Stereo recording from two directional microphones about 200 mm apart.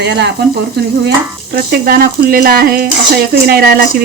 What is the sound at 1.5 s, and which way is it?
Speech, 50° right (ahead or behind).